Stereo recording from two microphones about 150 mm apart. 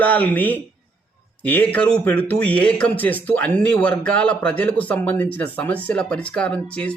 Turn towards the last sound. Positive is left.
turn(degrees=10)  # may be behind; listen again after turning